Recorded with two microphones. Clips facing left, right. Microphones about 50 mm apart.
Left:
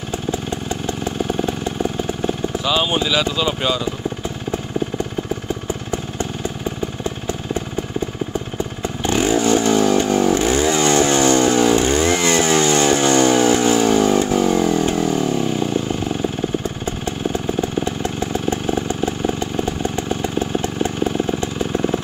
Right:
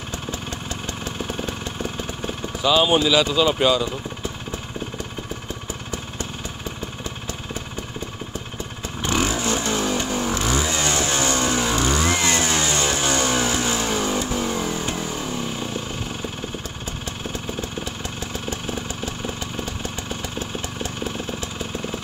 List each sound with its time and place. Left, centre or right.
0.1 s vehicle: left
2.6 s speech: centre
9.4 s vehicle: centre
10.0 s chainsaw: centre
10.3 s motorcycle: left
10.6 s motorcycle: centre
11.1 s vehicle: centre
17.6 s vehicle: left
19.2 s motorcycle: left